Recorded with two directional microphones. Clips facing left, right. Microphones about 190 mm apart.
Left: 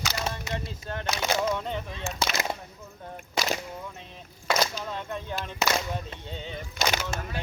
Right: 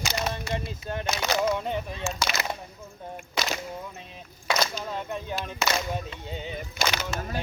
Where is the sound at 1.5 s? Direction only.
10° right (ahead or behind).